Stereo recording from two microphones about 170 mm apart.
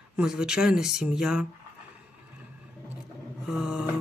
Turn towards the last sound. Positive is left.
turn(degrees=-5)  # may be behind; listen again after turning